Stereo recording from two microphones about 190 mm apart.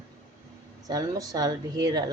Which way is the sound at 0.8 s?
20° right (ahead or behind).